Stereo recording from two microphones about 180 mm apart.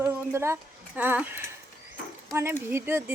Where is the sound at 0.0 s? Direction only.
15° right (ahead or behind).